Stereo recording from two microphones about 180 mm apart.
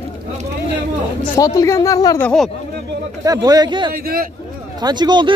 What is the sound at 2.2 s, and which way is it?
Speech, centre (ahead or behind).